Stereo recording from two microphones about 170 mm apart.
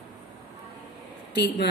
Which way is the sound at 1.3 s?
90° left.